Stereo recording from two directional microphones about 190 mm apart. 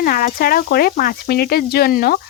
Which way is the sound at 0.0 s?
50° left (ahead or behind).